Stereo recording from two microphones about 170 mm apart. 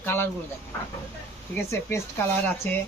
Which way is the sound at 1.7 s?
15° left (ahead or behind).